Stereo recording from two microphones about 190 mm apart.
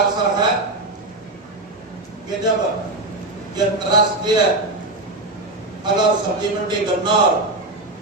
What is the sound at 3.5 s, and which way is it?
Speech, 20° right (ahead or behind).